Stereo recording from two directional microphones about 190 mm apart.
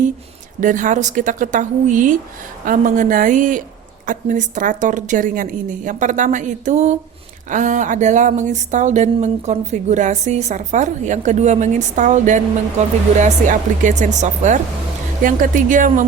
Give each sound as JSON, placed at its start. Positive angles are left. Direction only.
{"t": 0.6, "sound": "speech", "side_deg": -45}